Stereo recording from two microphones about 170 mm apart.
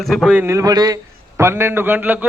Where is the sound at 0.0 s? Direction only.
Centre (ahead or behind).